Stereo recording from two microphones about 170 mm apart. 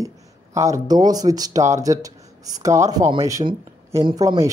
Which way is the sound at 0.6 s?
20° right (ahead or behind).